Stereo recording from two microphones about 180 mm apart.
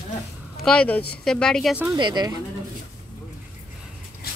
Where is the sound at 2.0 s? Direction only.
25° right (ahead or behind).